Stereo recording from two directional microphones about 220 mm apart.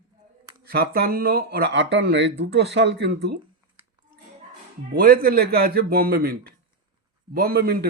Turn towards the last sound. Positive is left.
turn(degrees=-45)  # may be behind; listen again after turning